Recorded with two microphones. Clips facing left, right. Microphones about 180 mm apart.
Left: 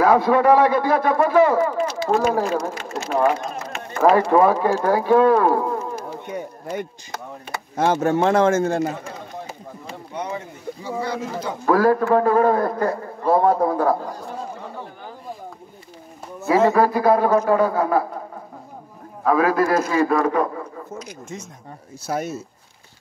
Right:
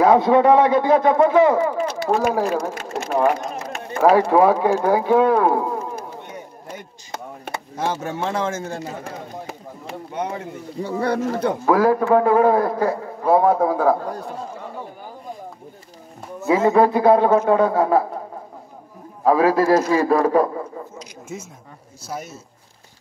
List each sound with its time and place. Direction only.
0.0 s a man's voice: 20° right (ahead or behind)
2.7 s speech: 50° right (ahead or behind)
3.9 s a man's voice: 10° right (ahead or behind)
7.7 s speech: 55° left (ahead or behind)
9.8 s speech: 55° right (ahead or behind)
11.7 s a man's voice: 15° right (ahead or behind)
16.4 s a man's voice: 20° right (ahead or behind)
19.2 s a man's voice: 30° right (ahead or behind)
21.3 s speech: 5° right (ahead or behind)
22.0 s speech: 60° left (ahead or behind)